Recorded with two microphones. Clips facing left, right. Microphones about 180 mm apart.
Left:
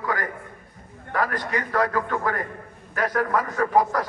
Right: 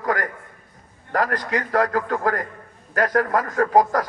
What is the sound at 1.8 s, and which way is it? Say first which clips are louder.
Speech: right 2 dB; 40° right (ahead or behind).